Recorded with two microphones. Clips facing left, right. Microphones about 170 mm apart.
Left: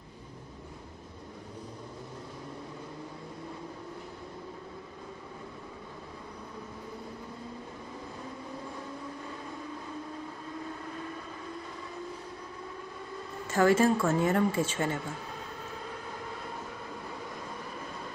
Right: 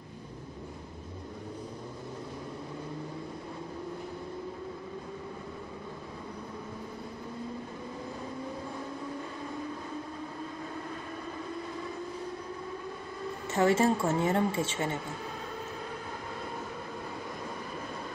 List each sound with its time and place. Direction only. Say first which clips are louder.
13.5 s speech: left 2 dB; 25° right (ahead or behind)